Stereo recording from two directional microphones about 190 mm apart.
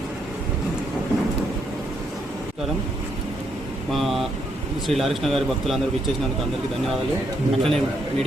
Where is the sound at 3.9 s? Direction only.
Centre (ahead or behind).